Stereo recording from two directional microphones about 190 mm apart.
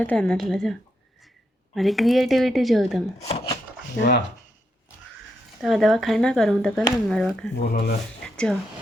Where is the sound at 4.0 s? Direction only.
5° left (ahead or behind).